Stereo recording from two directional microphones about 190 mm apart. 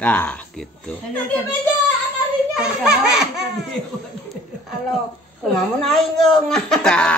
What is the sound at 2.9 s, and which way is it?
Speech, 60° right (ahead or behind).